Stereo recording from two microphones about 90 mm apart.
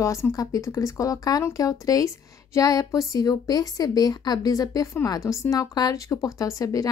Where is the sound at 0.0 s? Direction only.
35° left (ahead or behind).